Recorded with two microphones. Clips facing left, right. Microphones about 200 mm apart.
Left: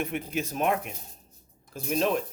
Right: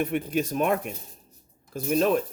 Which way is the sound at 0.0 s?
45° right (ahead or behind).